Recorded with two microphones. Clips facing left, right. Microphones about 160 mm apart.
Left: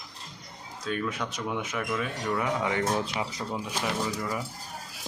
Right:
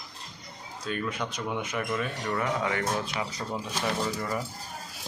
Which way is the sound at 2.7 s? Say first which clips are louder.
Left 2 dB; 20° left (ahead or behind).